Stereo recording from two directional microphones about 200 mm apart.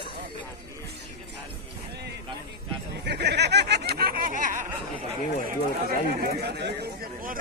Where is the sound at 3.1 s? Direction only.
55° right (ahead or behind).